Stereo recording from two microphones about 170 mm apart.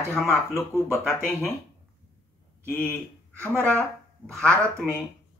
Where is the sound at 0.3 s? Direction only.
15° left (ahead or behind).